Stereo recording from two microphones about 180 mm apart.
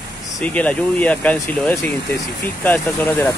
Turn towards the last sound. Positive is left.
turn(degrees=10)  # may be behind; listen again after turning